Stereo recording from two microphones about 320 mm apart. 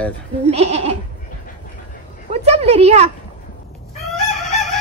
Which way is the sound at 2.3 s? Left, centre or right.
Centre.